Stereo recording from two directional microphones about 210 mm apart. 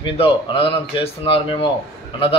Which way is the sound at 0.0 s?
25° left (ahead or behind).